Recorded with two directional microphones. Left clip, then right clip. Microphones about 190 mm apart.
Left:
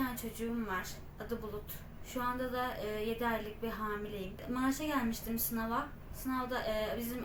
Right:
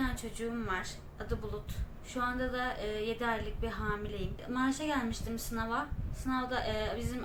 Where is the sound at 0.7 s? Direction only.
5° right (ahead or behind).